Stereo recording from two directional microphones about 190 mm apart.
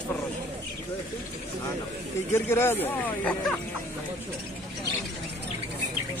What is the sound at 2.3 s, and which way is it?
Speech, 10° left (ahead or behind).